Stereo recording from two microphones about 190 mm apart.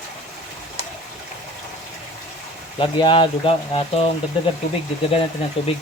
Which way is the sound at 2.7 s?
25° left (ahead or behind).